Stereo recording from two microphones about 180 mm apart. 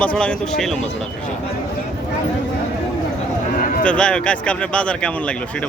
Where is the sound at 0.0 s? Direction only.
5° left (ahead or behind).